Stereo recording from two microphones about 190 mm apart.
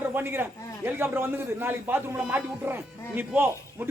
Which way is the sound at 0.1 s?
10° right (ahead or behind).